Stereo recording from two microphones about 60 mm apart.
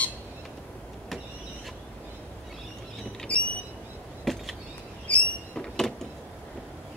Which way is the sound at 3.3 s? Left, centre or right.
Left.